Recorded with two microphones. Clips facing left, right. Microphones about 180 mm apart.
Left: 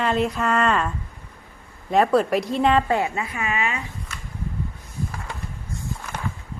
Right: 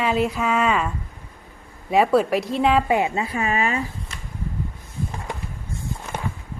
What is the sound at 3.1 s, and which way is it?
Speech, 30° right (ahead or behind).